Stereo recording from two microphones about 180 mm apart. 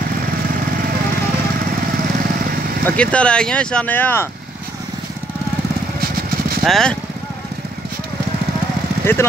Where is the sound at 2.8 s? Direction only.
5° left (ahead or behind).